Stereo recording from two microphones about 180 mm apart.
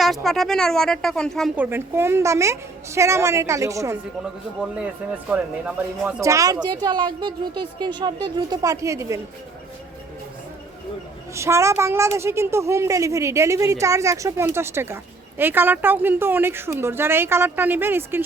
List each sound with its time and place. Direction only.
0.0 s speech: centre (ahead or behind)
1.5 s a woman's voice: 15° right (ahead or behind)
5.3 s speech: 5° right (ahead or behind)
11.3 s a woman's voice: 15° right (ahead or behind)